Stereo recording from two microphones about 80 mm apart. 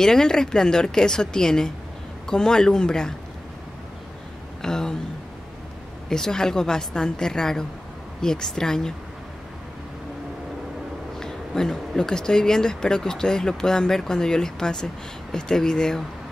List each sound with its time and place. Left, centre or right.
0.0 s speech: centre
4.6 s a sound: centre
6.0 s speech: centre
11.1 s speech: centre